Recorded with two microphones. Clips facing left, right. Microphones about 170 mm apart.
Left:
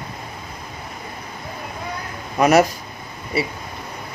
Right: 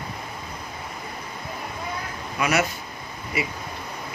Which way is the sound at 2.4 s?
40° left (ahead or behind).